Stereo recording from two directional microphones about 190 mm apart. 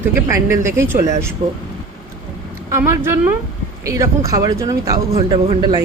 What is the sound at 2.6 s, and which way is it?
A man's voice, 15° right (ahead or behind).